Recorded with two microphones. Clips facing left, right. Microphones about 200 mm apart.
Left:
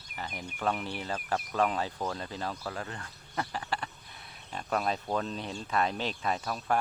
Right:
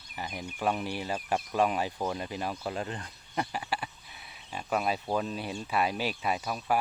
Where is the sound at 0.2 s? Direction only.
15° right (ahead or behind).